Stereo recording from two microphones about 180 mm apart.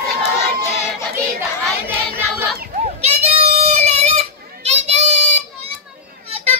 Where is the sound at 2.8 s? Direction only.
35° right (ahead or behind).